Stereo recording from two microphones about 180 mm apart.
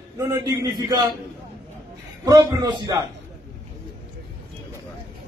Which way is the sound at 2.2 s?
20° right (ahead or behind).